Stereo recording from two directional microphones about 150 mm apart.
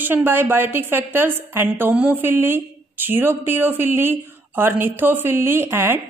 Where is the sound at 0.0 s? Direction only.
15° right (ahead or behind).